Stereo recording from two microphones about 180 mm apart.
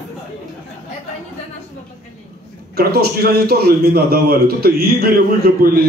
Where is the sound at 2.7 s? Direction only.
60° right (ahead or behind).